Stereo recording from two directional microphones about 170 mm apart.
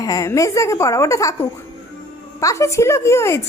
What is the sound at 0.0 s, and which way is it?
A woman's voice, 20° left (ahead or behind).